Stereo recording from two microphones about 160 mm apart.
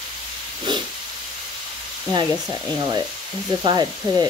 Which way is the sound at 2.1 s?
25° right (ahead or behind).